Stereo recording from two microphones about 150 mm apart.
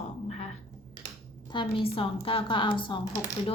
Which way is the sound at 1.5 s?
35° left (ahead or behind).